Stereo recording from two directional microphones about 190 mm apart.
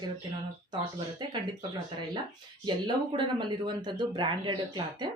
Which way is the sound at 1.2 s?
25° right (ahead or behind).